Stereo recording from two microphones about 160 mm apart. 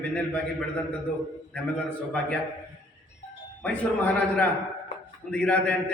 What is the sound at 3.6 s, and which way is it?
A man's voice, 10° left (ahead or behind).